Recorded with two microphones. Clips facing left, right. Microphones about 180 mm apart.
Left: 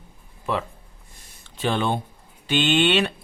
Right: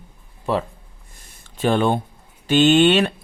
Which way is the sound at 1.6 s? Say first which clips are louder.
Right 5 dB; 45° right (ahead or behind).